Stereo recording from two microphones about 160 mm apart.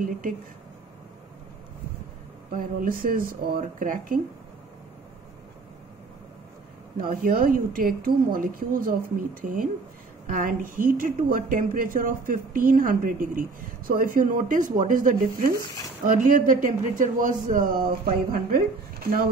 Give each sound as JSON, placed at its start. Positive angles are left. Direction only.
{"t": 2.5, "sound": "a woman's voice", "side_deg": -60}
{"t": 7.0, "sound": "a woman's voice", "side_deg": -60}